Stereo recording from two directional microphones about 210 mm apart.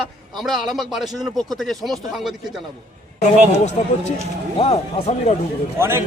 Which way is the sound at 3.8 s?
40° left (ahead or behind).